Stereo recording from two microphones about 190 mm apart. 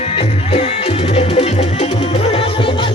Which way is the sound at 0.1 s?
30° left (ahead or behind).